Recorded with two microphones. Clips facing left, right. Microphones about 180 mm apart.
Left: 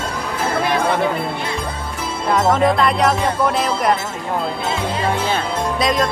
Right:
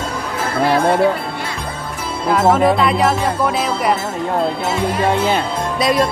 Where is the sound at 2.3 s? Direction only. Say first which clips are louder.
Right 2 dB; 5° right (ahead or behind).